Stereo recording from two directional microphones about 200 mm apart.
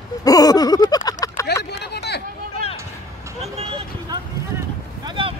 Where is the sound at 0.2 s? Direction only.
20° left (ahead or behind).